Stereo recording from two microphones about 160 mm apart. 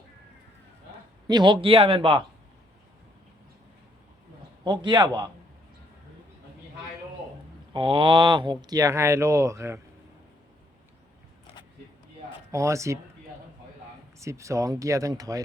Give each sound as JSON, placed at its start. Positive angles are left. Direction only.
{"t": 1.3, "sound": "speech", "side_deg": -30}
{"t": 4.6, "sound": "speech", "side_deg": -25}
{"t": 7.7, "sound": "speech", "side_deg": -30}
{"t": 12.5, "sound": "speech", "side_deg": -20}
{"t": 14.2, "sound": "speech", "side_deg": -20}